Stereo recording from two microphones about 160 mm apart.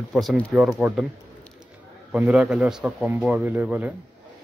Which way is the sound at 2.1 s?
10° right (ahead or behind).